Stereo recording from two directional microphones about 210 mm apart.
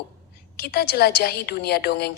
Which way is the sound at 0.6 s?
45° left (ahead or behind).